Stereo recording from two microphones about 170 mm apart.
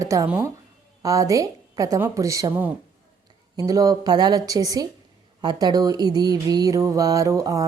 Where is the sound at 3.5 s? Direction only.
20° right (ahead or behind).